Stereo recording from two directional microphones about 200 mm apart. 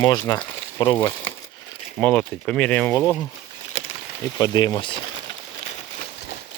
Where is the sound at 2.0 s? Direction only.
5° left (ahead or behind).